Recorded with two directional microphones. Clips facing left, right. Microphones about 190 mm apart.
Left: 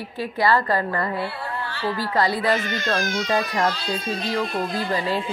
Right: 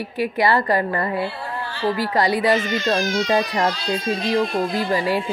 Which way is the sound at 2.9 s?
30° right (ahead or behind).